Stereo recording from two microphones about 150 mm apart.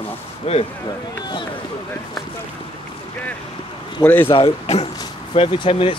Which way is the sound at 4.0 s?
10° left (ahead or behind).